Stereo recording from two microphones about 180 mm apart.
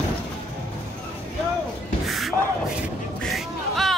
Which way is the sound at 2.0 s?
Centre (ahead or behind).